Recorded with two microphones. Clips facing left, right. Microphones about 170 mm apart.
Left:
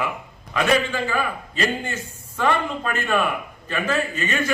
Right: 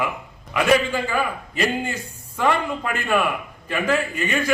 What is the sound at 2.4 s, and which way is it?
A man's voice, 10° right (ahead or behind).